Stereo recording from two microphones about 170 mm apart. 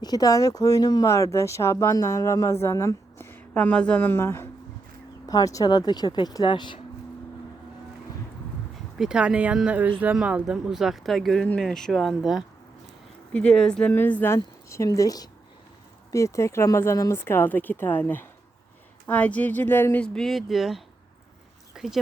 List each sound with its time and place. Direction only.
0.0 s speech: 25° left (ahead or behind)
9.0 s speech: 5° right (ahead or behind)
21.7 s a sound: 5° right (ahead or behind)